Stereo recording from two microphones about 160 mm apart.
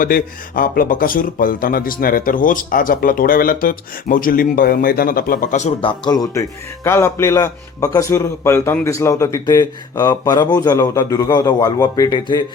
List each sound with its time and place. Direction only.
0.0 s speech: 60° left (ahead or behind)
5.8 s a man's voice: 25° left (ahead or behind)